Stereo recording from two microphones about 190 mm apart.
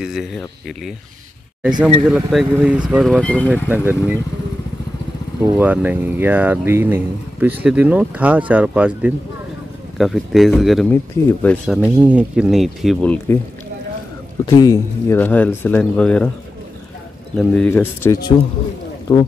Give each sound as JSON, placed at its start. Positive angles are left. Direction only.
{"t": 0.0, "sound": "speech", "side_deg": 0}
{"t": 2.0, "sound": "speech", "side_deg": -5}
{"t": 3.6, "sound": "speech", "side_deg": -10}
{"t": 5.4, "sound": "speech", "side_deg": -10}
{"t": 14.4, "sound": "speech", "side_deg": 20}
{"t": 17.6, "sound": "speech", "side_deg": 15}